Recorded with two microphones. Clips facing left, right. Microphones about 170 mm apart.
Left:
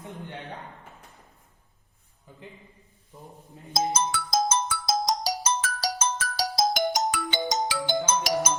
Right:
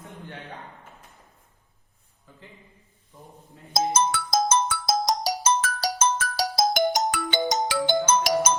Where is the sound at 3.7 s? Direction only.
55° right (ahead or behind).